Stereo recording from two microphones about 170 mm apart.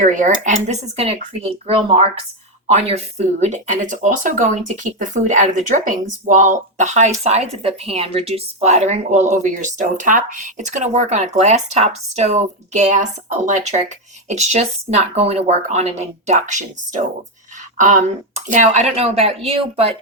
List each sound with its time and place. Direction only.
0.0 s speech: 50° right (ahead or behind)